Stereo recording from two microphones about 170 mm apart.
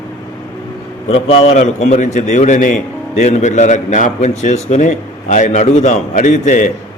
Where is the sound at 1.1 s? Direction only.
40° left (ahead or behind).